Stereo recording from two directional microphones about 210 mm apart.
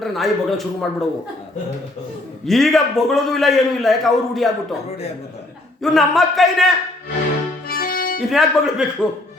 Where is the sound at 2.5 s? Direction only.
Centre (ahead or behind).